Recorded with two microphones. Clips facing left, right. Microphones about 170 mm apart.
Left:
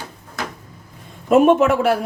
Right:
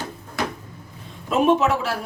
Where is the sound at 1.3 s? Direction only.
50° left (ahead or behind).